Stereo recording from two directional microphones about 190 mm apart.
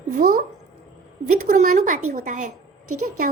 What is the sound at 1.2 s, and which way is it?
A woman's voice, 40° right (ahead or behind).